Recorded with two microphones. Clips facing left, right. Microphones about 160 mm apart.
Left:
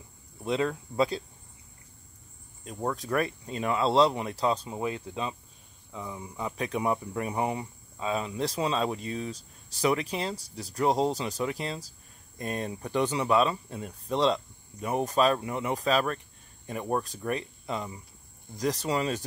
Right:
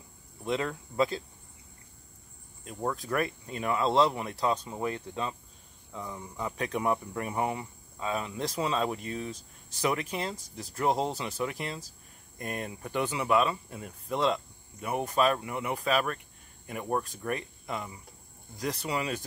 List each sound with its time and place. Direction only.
0.5 s speech: 25° left (ahead or behind)
3.0 s speech: 25° left (ahead or behind)
9.2 s speech: 35° left (ahead or behind)
11.0 s speech: 15° left (ahead or behind)
17.3 s speech: 25° left (ahead or behind)